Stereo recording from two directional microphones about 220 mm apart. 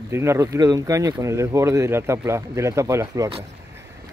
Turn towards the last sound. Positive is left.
turn(degrees=-15)  # may be behind; listen again after turning